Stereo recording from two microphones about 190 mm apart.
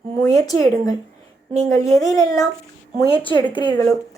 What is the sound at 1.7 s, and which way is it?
Speech, 20° left (ahead or behind).